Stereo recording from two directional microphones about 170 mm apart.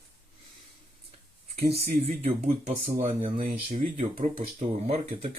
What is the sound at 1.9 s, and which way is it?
Speech, 40° right (ahead or behind).